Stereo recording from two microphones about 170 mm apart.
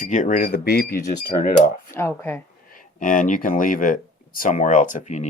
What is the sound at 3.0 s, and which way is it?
Speech, 50° left (ahead or behind).